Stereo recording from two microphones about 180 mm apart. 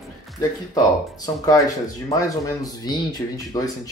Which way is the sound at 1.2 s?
20° left (ahead or behind).